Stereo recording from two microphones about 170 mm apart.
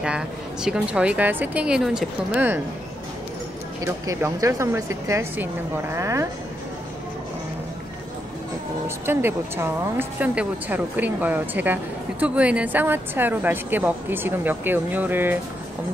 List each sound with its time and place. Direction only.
0.0 s speech: 5° right (ahead or behind)
3.8 s speech: 20° right (ahead or behind)
8.8 s speech: 15° right (ahead or behind)